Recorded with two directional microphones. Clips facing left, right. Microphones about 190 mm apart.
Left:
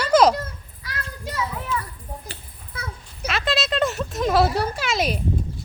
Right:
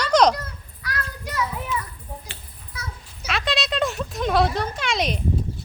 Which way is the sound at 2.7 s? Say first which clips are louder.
Left 2 dB; 55° left (ahead or behind).